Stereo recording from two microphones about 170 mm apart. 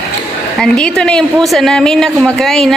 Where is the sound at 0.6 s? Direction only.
5° left (ahead or behind).